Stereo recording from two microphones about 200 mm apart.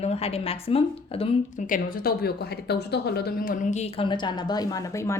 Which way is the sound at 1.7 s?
50° left (ahead or behind).